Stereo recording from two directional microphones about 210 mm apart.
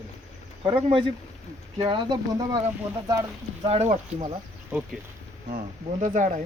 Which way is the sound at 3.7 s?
30° right (ahead or behind).